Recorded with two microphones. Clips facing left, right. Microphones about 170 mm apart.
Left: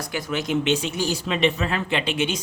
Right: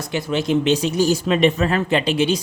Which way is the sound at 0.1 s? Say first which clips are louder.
Right 6 dB; 25° right (ahead or behind).